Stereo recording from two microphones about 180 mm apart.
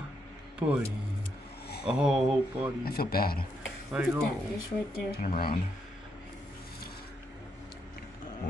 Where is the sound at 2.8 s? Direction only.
60° left (ahead or behind).